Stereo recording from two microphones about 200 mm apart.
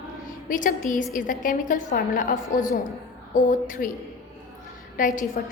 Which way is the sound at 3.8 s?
45° left (ahead or behind).